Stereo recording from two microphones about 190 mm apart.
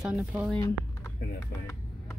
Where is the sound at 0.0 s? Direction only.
5° right (ahead or behind).